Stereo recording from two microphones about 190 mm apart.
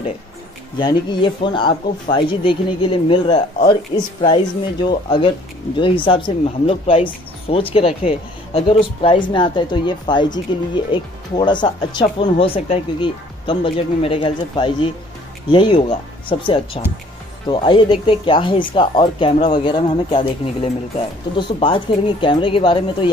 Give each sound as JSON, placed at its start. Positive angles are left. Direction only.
{"t": 0.7, "sound": "speech", "side_deg": 25}